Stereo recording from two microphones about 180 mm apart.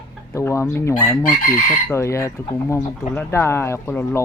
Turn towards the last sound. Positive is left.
turn(degrees=15)  # may be behind; listen again after turning